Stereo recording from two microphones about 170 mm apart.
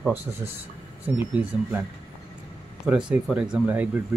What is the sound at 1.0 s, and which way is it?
Speech, 10° right (ahead or behind).